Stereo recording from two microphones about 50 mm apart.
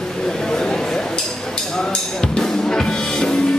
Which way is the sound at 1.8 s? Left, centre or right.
Centre.